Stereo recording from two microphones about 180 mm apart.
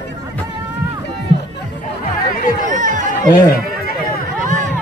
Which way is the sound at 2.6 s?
45° right (ahead or behind).